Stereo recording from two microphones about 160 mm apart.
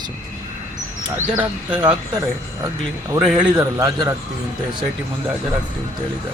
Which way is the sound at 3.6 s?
20° right (ahead or behind).